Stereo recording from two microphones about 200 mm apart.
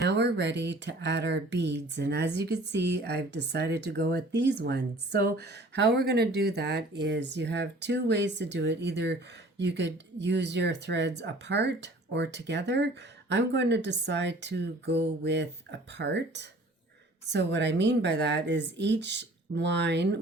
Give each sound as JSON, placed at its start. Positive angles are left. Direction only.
{"t": 0.0, "sound": "speech", "side_deg": -60}